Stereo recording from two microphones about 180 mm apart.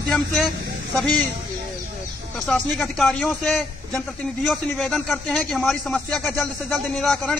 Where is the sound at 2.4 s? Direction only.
Centre (ahead or behind).